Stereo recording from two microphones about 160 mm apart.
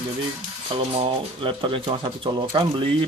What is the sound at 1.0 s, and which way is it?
Speech, 30° right (ahead or behind).